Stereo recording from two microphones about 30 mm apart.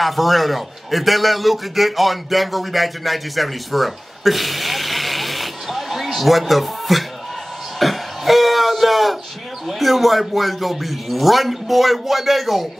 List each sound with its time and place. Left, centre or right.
0.0 s a man's voice: centre
7.8 s throat clearing: centre
9.7 s speech: centre